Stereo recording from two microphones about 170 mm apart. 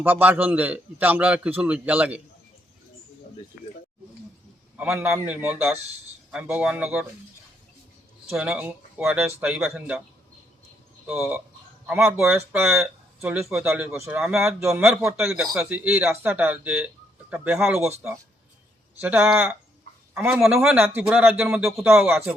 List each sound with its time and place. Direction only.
0.0 s a man's voice: 10° right (ahead or behind)
4.8 s a man's voice: 10° right (ahead or behind)
8.4 s a man's voice: 10° right (ahead or behind)
11.0 s a man's voice: 10° right (ahead or behind)